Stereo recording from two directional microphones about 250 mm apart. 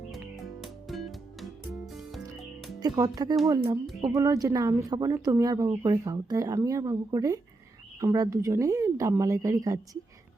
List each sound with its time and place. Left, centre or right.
0.1 s music: centre
2.8 s speech: centre